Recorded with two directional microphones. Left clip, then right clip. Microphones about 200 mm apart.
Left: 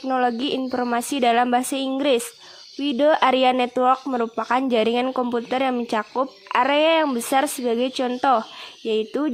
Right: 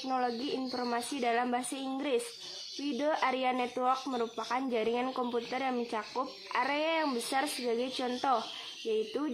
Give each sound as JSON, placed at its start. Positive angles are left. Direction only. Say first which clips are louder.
{"t": 0.1, "sound": "speech", "louder": "left 11 dB", "side_deg": 45}